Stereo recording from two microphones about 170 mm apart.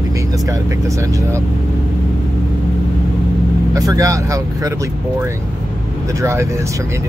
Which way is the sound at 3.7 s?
20° right (ahead or behind).